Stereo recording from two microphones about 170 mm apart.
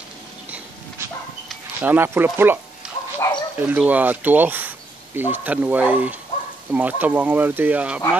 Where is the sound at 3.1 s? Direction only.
20° left (ahead or behind).